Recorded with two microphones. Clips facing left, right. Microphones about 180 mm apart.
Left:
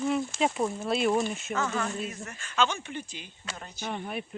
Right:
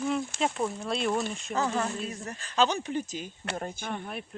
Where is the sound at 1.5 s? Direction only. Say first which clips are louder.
Right 3 dB; 35° right (ahead or behind); by 3.8 s 50° right (ahead or behind).